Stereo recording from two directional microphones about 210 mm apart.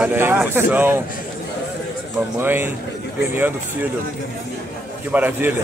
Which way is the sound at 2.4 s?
10° right (ahead or behind).